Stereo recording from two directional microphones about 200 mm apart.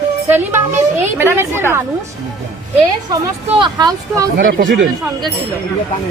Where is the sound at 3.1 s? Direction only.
20° right (ahead or behind).